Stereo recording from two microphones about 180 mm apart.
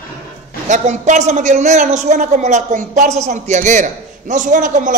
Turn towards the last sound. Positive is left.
turn(degrees=-45)  # may be behind; listen again after turning